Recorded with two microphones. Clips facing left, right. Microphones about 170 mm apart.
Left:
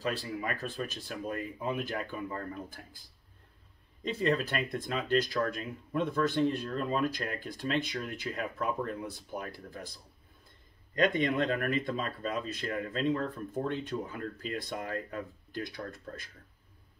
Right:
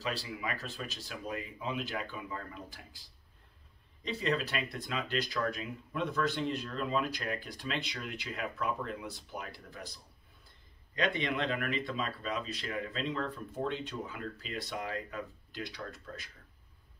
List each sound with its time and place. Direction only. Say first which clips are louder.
0.0 s speech: left 3 dB; 50° left (ahead or behind)
11.0 s speech: left 5 dB; 45° left (ahead or behind)